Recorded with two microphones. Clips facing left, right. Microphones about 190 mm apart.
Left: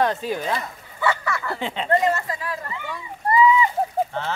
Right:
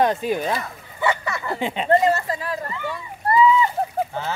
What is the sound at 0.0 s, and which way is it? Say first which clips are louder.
Speech: right 2 dB; 15° right (ahead or behind).